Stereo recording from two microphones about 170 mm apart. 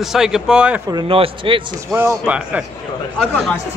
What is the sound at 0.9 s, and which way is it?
Speech, 30° right (ahead or behind).